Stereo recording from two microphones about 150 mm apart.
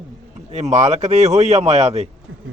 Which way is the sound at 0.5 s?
50° right (ahead or behind).